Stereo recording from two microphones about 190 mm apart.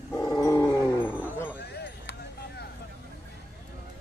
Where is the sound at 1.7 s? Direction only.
60° left (ahead or behind).